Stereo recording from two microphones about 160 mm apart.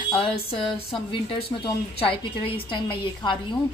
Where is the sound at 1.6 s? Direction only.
35° left (ahead or behind).